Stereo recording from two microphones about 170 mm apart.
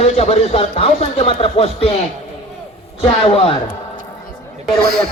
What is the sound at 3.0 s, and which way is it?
Speech, 35° left (ahead or behind).